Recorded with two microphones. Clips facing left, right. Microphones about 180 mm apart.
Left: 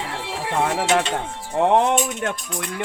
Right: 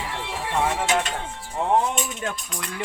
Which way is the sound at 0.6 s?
65° left (ahead or behind).